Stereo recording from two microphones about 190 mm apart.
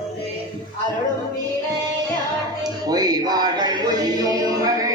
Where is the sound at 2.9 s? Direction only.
20° right (ahead or behind).